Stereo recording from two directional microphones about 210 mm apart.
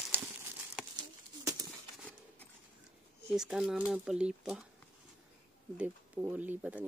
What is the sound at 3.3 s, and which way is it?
Speech, centre (ahead or behind).